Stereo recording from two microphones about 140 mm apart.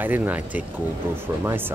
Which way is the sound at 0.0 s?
15° right (ahead or behind).